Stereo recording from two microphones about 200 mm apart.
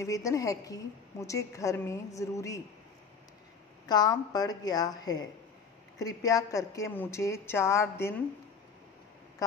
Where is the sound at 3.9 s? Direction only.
20° left (ahead or behind).